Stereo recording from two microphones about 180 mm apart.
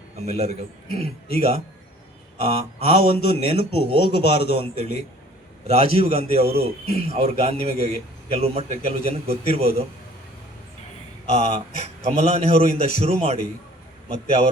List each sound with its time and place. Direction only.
0.3 s a man's voice: 35° right (ahead or behind)
11.3 s a man's voice: 35° right (ahead or behind)